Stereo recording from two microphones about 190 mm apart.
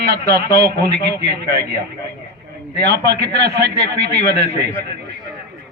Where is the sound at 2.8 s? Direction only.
60° right (ahead or behind).